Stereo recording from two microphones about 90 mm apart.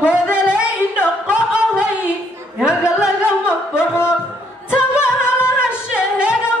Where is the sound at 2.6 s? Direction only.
10° right (ahead or behind).